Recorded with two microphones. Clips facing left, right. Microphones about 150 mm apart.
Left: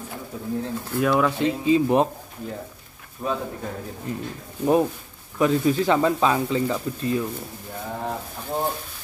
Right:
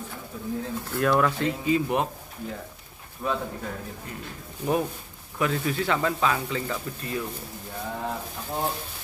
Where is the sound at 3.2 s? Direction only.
25° left (ahead or behind).